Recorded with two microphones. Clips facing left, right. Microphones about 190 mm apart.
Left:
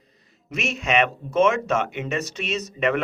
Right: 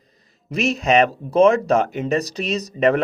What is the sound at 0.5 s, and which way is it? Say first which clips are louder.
Speech: right 6 dB; 35° right (ahead or behind).